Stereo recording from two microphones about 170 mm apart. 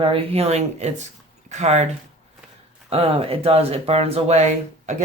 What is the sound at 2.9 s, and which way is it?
Speech, 35° right (ahead or behind).